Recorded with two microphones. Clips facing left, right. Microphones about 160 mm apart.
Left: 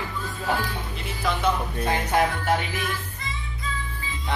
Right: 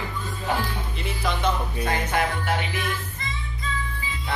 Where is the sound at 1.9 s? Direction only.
35° left (ahead or behind).